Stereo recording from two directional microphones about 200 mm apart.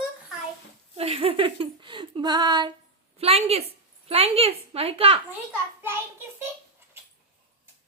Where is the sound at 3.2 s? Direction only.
30° right (ahead or behind).